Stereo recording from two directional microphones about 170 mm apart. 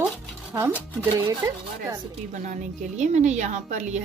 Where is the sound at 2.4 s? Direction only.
45° right (ahead or behind).